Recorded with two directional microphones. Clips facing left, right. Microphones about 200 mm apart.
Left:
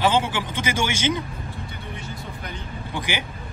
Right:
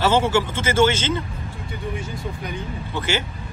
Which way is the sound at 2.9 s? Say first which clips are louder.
Right 4 dB; 15° left (ahead or behind).